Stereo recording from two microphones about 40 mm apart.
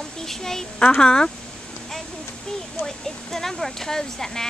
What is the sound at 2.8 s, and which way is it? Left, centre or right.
Speech, centre.